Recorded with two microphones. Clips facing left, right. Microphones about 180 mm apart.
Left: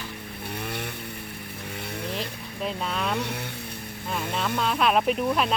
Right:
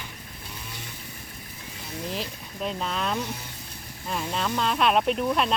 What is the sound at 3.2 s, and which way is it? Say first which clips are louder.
Speech: left 2 dB; 65° left (ahead or behind).